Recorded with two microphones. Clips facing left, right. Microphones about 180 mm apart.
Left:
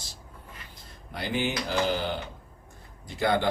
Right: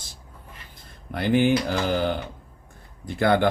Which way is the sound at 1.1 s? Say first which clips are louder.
Right 9 dB; 55° right (ahead or behind).